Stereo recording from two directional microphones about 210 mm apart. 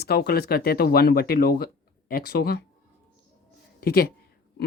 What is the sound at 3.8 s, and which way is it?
Speech, 45° left (ahead or behind).